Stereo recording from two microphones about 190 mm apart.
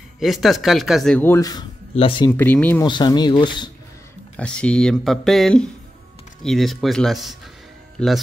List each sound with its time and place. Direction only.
0.2 s a man's voice: centre (ahead or behind); by 2.3 s 25° left (ahead or behind)
2.3 s speech: 10° left (ahead or behind)
2.8 s speech: 20° left (ahead or behind)
4.4 s a man's voice: 5° left (ahead or behind)